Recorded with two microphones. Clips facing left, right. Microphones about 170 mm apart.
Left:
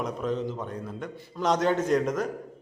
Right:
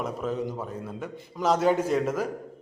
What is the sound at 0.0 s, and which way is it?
A man's voice, 5° right (ahead or behind).